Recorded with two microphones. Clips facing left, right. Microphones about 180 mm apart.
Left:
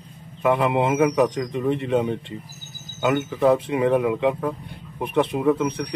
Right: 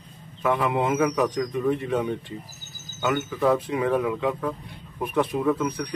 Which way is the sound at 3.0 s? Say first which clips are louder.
Left 4 dB; 20° left (ahead or behind).